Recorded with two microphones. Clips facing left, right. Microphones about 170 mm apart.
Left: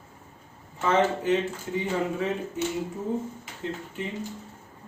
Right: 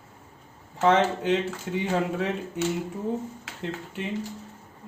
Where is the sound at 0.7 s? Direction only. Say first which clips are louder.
Right 2 dB; 70° right (ahead or behind).